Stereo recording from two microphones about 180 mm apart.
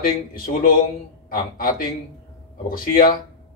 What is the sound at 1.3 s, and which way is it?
Speech, 50° left (ahead or behind).